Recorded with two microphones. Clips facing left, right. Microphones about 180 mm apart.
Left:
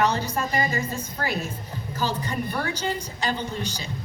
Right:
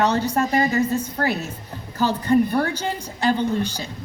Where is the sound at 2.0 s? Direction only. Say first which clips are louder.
Right 10 dB; 55° right (ahead or behind).